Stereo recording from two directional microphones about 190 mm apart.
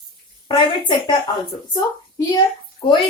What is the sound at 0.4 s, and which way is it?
Speech, 25° left (ahead or behind).